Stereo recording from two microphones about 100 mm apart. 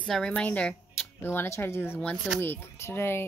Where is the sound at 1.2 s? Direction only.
25° left (ahead or behind).